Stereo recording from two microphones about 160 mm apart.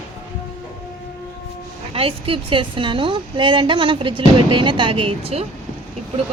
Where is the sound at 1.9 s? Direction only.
35° right (ahead or behind).